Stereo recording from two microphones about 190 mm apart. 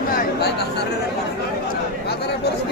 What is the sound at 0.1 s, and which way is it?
Chatter, 50° left (ahead or behind).